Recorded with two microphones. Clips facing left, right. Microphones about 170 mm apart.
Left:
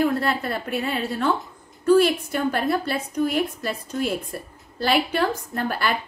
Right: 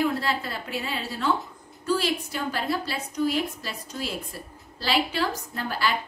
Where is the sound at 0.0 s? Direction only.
55° left (ahead or behind).